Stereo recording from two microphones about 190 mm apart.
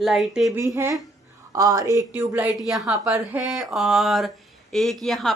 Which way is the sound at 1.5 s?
20° right (ahead or behind).